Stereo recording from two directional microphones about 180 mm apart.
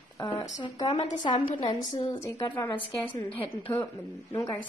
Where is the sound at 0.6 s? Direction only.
25° left (ahead or behind).